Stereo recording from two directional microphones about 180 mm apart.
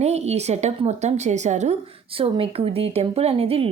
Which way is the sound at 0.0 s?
35° right (ahead or behind).